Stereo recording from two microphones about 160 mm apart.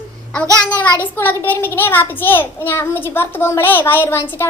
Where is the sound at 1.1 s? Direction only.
15° left (ahead or behind).